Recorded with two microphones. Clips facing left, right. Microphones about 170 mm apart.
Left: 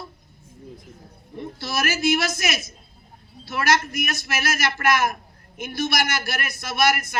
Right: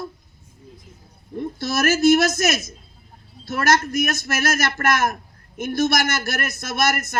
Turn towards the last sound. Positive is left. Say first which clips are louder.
# even
turn(degrees=-45)  # may be behind; listen again after turning